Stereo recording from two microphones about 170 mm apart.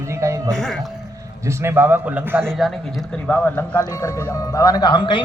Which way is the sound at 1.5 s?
15° right (ahead or behind).